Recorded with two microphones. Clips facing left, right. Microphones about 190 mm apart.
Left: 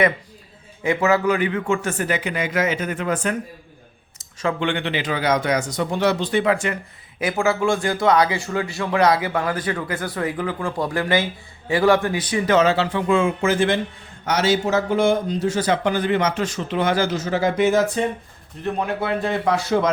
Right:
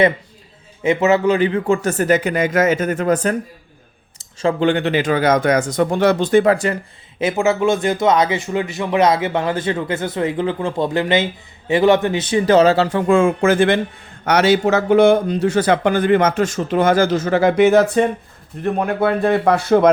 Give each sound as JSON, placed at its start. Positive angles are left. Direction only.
{"t": 0.8, "sound": "speech", "side_deg": -20}
{"t": 7.2, "sound": "a man's voice", "side_deg": -25}